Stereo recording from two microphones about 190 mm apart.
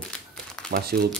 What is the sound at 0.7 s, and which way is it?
Speech, 50° right (ahead or behind).